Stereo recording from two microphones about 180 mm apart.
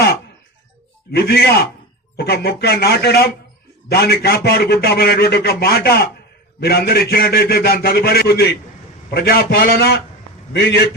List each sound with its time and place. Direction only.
1.1 s a man's voice: 60° left (ahead or behind)